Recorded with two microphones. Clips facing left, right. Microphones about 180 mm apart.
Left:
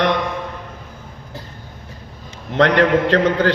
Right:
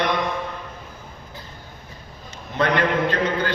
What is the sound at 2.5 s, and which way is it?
A man's voice, 85° left.